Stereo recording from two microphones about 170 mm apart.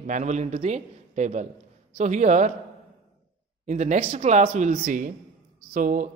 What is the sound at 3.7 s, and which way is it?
A man's voice, 45° right (ahead or behind).